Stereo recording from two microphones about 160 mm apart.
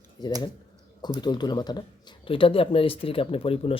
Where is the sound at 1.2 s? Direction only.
25° left (ahead or behind).